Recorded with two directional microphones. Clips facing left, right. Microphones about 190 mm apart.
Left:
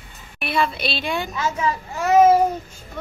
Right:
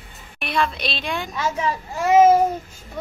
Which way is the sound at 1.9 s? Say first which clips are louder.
Right 1 dB; 10° right (ahead or behind).